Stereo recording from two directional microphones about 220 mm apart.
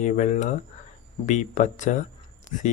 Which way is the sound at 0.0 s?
35° left (ahead or behind).